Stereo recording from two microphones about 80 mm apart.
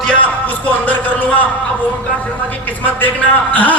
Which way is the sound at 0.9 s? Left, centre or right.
Left.